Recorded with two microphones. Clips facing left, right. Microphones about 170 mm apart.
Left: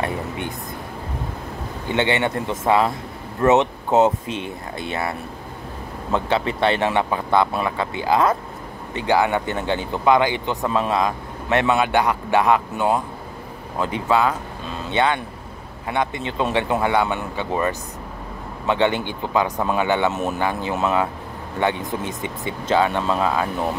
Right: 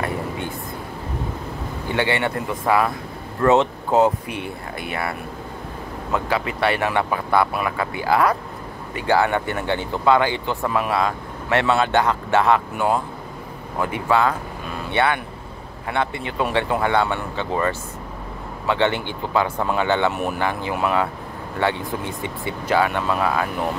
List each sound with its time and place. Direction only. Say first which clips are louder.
1.9 s speech: left 1 dB; 20° left (ahead or behind)
6.1 s speech: left 2 dB; 25° left (ahead or behind)